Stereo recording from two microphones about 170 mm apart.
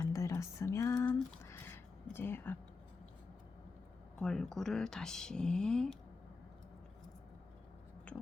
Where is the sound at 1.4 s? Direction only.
15° left (ahead or behind).